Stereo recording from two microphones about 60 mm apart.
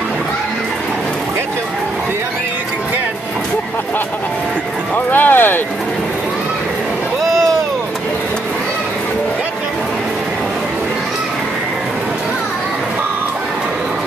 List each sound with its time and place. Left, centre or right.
4.9 s clip-clop: left